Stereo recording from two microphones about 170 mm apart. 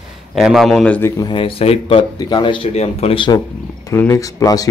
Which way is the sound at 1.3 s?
30° left (ahead or behind).